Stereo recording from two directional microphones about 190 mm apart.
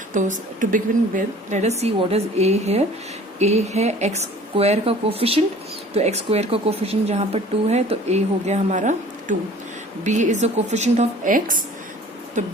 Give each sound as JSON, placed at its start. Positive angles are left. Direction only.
{"t": 0.1, "sound": "a woman's voice", "side_deg": -40}